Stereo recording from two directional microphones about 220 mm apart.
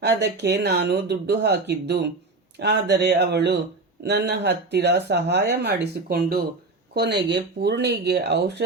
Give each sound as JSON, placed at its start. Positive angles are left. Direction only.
{"t": 0.0, "sound": "speech", "side_deg": -50}